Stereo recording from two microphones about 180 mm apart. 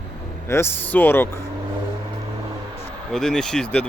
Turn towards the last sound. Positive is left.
turn(degrees=5)  # may be behind; listen again after turning